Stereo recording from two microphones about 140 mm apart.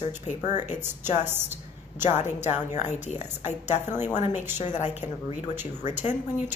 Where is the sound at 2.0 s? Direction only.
55° left (ahead or behind).